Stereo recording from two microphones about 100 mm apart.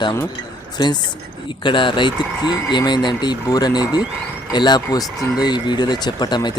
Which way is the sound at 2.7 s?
50° left (ahead or behind).